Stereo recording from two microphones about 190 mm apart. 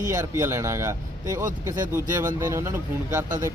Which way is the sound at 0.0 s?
15° right (ahead or behind).